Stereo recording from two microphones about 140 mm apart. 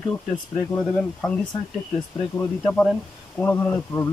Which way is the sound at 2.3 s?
15° left (ahead or behind).